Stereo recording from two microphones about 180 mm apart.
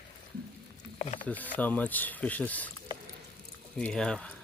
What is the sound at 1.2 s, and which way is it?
Speech, 10° left (ahead or behind).